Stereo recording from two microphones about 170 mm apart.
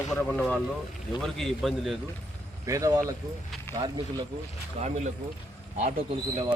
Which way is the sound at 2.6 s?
20° right (ahead or behind).